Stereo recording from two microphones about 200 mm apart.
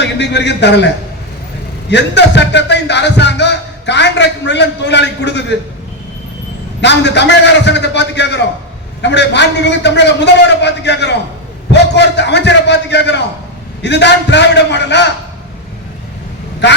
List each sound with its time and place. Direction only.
0.0 s speech: 60° left (ahead or behind)
1.9 s speech: 60° left (ahead or behind)
6.8 s speech: 60° left (ahead or behind)